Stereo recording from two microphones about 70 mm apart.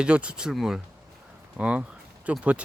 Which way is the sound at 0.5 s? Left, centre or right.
Centre.